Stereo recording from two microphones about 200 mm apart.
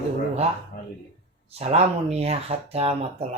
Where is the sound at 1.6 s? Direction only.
30° right (ahead or behind).